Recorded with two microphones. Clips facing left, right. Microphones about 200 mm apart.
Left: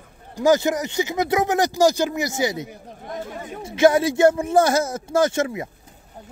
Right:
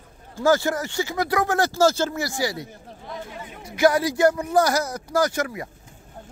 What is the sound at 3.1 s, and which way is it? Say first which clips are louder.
Chatter: left 4 dB; 45° left (ahead or behind).